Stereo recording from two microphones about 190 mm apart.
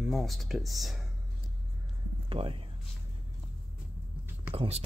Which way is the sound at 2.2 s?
30° right (ahead or behind).